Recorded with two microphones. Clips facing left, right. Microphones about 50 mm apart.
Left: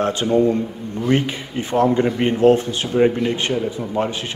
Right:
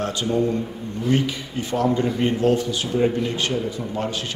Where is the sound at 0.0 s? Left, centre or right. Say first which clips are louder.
Left 5 dB; left.